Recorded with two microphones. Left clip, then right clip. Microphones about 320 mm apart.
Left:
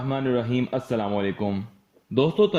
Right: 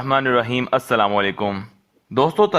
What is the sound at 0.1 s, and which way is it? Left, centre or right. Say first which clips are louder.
A man's voice: right 8 dB; right.